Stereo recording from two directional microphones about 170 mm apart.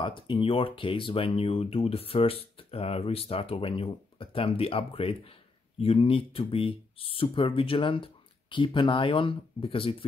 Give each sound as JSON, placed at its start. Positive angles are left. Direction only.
{"t": 0.0, "sound": "speech", "side_deg": 30}